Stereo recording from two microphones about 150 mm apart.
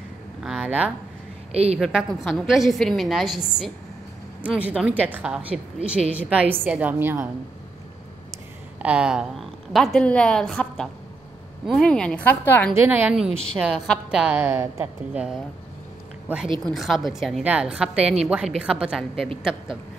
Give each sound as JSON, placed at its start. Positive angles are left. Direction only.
{"t": 0.4, "sound": "speech", "side_deg": -5}
{"t": 1.5, "sound": "a woman's voice", "side_deg": -45}
{"t": 1.8, "sound": "a woman's voice", "side_deg": 0}
{"t": 8.7, "sound": "a woman's voice", "side_deg": -10}
{"t": 12.7, "sound": "a woman's voice", "side_deg": -15}
{"t": 16.6, "sound": "a woman's voice", "side_deg": 0}